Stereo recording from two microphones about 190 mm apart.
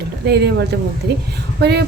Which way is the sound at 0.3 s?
60° right (ahead or behind).